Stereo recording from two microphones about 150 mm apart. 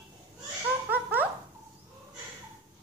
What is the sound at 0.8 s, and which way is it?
Baby laughter, 10° right (ahead or behind).